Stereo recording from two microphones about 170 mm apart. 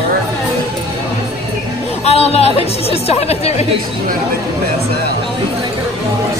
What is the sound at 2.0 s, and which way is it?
Chatter, 35° left (ahead or behind).